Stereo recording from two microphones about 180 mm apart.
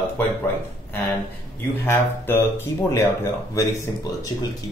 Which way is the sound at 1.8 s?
10° left (ahead or behind).